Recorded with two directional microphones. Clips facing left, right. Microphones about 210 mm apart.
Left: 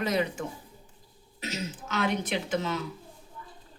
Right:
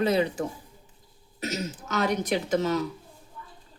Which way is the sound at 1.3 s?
40° right (ahead or behind).